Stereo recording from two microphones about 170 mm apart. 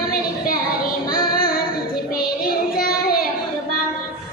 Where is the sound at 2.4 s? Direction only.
60° left (ahead or behind).